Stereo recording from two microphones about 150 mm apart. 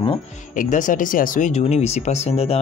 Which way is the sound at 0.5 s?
60° left (ahead or behind).